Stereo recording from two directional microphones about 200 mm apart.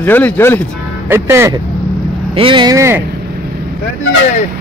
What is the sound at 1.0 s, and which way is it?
Speech, 10° right (ahead or behind).